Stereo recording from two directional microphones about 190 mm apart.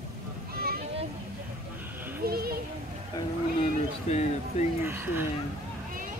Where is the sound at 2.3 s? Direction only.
55° right (ahead or behind).